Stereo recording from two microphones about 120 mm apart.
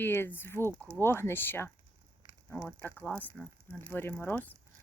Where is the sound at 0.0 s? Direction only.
20° left (ahead or behind).